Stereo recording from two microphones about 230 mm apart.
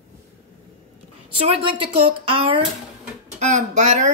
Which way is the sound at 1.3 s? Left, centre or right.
Right.